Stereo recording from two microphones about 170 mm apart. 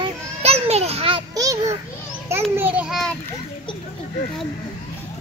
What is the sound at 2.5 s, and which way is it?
Speech, 10° right (ahead or behind).